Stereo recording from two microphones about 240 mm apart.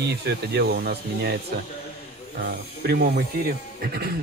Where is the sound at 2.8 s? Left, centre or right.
Right.